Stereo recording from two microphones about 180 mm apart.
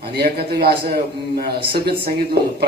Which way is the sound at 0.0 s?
60° right (ahead or behind).